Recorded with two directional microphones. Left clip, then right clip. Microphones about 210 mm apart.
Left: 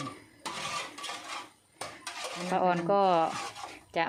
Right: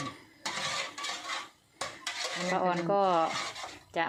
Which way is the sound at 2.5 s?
15° left (ahead or behind).